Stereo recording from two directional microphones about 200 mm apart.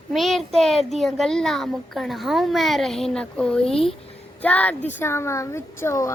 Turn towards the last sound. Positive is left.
turn(degrees=15)  # may be behind; listen again after turning